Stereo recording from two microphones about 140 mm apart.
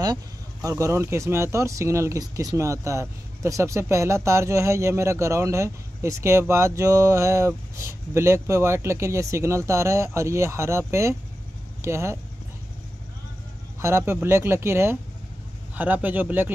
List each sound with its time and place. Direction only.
0.0 s speech: 25° right (ahead or behind)
13.7 s speech: 20° right (ahead or behind)